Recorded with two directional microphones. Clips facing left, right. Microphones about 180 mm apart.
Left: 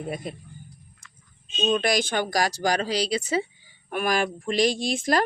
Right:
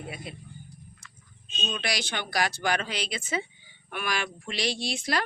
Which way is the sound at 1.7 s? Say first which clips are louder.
Left 9 dB; 50° left (ahead or behind).